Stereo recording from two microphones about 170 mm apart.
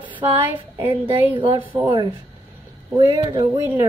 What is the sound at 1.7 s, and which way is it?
Speech, 30° right (ahead or behind).